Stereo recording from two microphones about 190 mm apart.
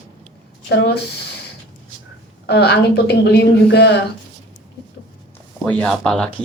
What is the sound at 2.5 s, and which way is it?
Speech, 60° left (ahead or behind).